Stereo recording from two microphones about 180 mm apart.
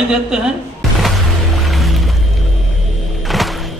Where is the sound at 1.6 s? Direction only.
Centre (ahead or behind).